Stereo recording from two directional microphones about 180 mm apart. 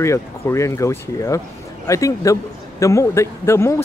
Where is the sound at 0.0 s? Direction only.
15° left (ahead or behind).